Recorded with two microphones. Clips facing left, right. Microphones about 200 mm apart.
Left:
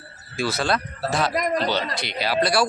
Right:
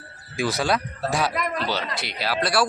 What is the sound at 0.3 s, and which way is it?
Speech, 15° right (ahead or behind).